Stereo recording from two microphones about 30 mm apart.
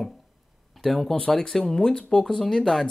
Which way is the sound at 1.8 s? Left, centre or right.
Left.